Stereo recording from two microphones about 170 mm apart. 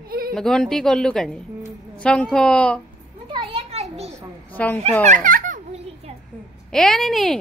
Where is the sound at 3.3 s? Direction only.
35° right (ahead or behind).